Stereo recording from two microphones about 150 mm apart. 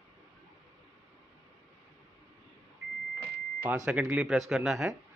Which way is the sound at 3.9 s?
10° right (ahead or behind).